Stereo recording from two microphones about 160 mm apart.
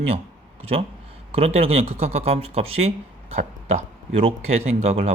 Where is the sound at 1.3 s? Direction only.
40° right (ahead or behind).